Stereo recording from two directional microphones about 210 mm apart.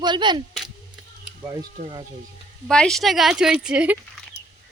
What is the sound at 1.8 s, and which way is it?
Speech, 35° right (ahead or behind).